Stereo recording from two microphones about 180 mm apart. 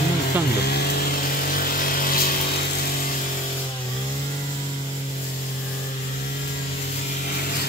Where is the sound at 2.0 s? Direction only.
55° left (ahead or behind).